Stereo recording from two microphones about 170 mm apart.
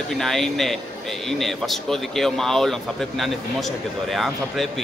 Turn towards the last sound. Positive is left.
turn(degrees=0)  # may be behind; listen again after turning